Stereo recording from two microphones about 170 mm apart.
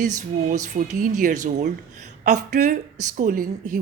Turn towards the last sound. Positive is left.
turn(degrees=-50)  # may be behind; listen again after turning